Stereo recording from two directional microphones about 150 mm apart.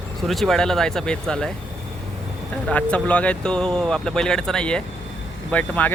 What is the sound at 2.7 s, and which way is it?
Speech, 10° left (ahead or behind).